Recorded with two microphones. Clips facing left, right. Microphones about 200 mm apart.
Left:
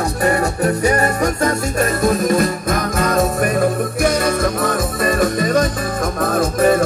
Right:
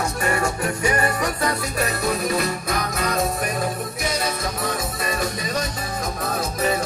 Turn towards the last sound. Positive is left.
turn(degrees=50)  # may be behind; listen again after turning